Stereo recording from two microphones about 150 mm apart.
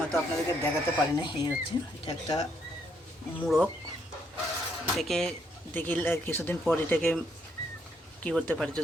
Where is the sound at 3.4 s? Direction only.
5° left (ahead or behind).